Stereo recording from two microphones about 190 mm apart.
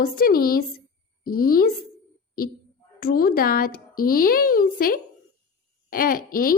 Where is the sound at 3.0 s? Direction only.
50° left (ahead or behind).